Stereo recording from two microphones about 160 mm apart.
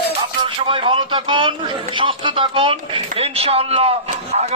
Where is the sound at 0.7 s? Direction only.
30° right (ahead or behind).